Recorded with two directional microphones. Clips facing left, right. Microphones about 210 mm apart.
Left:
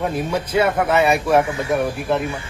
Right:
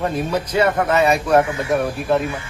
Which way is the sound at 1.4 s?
10° right (ahead or behind).